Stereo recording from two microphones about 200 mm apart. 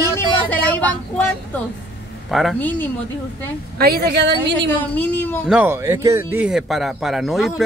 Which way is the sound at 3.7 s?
50° right (ahead or behind).